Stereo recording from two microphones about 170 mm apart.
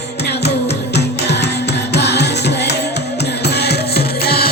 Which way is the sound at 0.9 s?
80° left.